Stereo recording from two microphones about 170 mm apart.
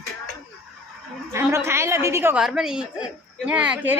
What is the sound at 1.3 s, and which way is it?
A woman's voice, 15° right (ahead or behind).